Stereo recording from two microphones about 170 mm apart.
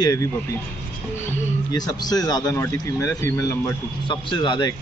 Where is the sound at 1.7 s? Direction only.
20° left (ahead or behind).